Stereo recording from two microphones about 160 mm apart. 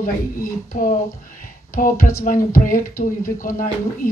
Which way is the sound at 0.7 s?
70° left (ahead or behind).